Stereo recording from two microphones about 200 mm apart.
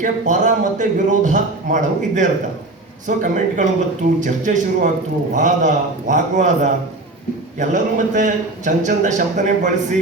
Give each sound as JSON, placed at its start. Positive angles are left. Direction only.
{"t": 0.0, "sound": "a man's voice", "side_deg": -40}